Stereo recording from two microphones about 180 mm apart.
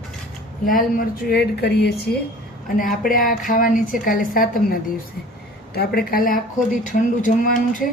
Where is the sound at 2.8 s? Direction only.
50° left (ahead or behind).